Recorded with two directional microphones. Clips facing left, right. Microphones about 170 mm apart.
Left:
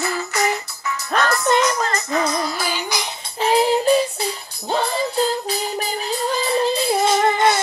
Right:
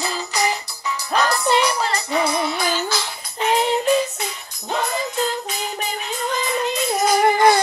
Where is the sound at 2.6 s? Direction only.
10° left (ahead or behind).